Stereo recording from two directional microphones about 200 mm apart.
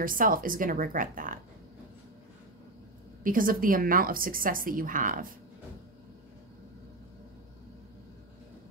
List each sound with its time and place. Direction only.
0.0 s a woman's voice: 45° right (ahead or behind)
3.3 s a woman's voice: 45° right (ahead or behind)